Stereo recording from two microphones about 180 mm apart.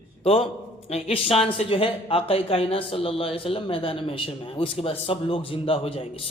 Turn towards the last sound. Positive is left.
turn(degrees=30)  # may be behind; listen again after turning